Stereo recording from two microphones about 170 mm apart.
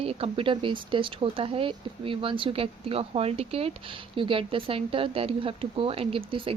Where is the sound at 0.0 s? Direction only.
35° right (ahead or behind).